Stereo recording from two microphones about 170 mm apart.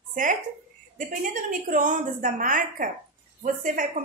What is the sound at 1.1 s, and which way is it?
A woman's voice, 55° right (ahead or behind).